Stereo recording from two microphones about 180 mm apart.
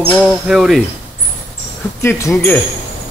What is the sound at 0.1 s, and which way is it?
Speech, centre (ahead or behind).